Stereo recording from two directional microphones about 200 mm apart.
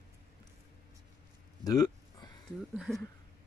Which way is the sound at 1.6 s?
20° left (ahead or behind).